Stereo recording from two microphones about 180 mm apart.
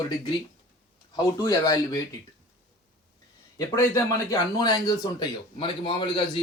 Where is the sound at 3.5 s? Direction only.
20° left (ahead or behind).